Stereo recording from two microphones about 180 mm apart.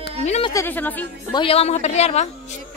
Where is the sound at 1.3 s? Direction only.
30° left (ahead or behind).